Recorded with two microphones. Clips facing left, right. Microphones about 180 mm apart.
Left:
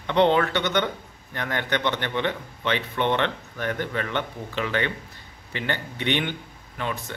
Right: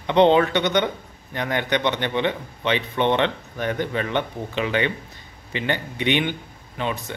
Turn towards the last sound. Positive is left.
turn(degrees=-20)  # may be behind; listen again after turning